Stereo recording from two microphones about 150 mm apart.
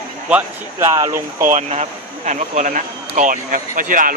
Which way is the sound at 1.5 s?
45° right (ahead or behind).